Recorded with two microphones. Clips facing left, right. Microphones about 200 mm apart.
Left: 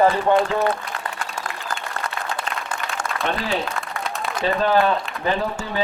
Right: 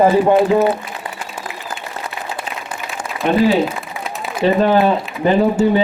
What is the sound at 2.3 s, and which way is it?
Applause, 5° right (ahead or behind).